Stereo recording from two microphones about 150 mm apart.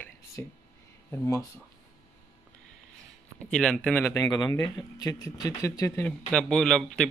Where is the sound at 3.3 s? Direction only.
5° left (ahead or behind).